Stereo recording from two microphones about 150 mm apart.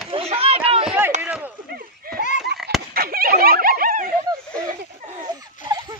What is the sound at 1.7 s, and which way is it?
Baby laughter, 90° right.